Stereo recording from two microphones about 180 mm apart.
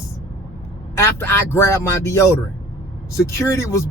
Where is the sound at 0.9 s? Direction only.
15° left (ahead or behind).